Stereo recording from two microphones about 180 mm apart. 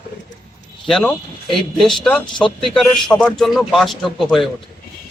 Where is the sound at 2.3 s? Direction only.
25° left (ahead or behind).